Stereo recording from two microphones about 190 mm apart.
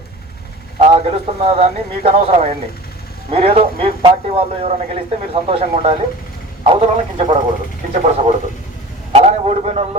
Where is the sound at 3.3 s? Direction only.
30° right (ahead or behind).